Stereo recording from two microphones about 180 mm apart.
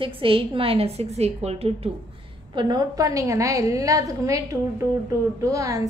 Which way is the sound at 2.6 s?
25° right (ahead or behind).